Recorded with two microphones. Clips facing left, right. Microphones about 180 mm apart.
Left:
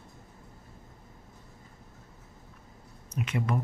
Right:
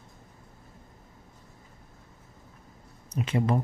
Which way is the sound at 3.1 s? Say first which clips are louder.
Right 4 dB; 30° right (ahead or behind).